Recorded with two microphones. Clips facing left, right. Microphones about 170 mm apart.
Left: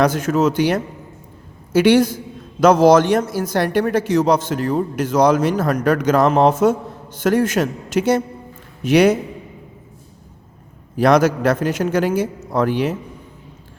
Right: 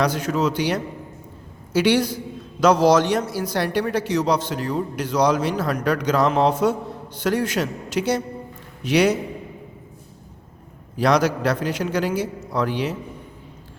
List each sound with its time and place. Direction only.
0.0 s a man's voice: 50° left (ahead or behind)
10.9 s a man's voice: 50° left (ahead or behind)